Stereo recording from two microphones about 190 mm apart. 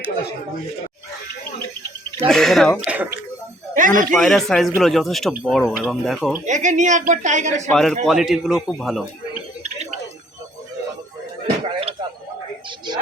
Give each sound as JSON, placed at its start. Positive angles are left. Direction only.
{"t": 2.3, "sound": "speech", "side_deg": 0}
{"t": 2.9, "sound": "speech", "side_deg": -10}
{"t": 3.8, "sound": "speech", "side_deg": -45}
{"t": 4.1, "sound": "speech", "side_deg": 0}
{"t": 6.4, "sound": "a woman's voice", "side_deg": -40}
{"t": 7.7, "sound": "speech", "side_deg": 0}
{"t": 11.4, "sound": "a sound", "side_deg": -30}